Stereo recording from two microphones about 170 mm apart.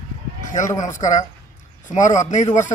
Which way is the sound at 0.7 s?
20° left (ahead or behind).